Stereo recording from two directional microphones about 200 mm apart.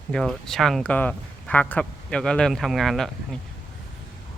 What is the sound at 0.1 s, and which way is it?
Speech, centre (ahead or behind).